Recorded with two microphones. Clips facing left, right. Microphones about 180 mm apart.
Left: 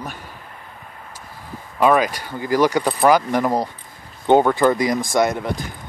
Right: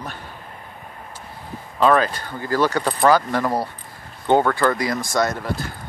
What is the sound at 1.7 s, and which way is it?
Speech, 10° left (ahead or behind).